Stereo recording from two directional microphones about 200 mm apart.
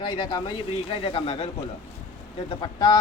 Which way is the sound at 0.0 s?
20° left (ahead or behind).